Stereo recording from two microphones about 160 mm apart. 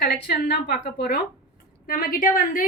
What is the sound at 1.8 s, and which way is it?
Speech, 65° left (ahead or behind).